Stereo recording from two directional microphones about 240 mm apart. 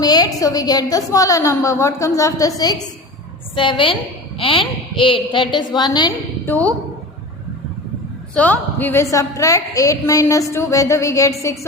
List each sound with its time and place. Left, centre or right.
0.0 s a woman's voice: centre
6.5 s a woman's voice: centre
8.4 s a woman's voice: centre